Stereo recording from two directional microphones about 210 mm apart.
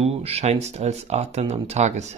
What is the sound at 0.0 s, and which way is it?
Speech, 30° right (ahead or behind).